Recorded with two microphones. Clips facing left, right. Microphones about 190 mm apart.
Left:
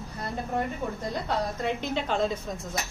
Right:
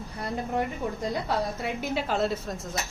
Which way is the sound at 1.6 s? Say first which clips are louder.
Left 1 dB; 5° right (ahead or behind).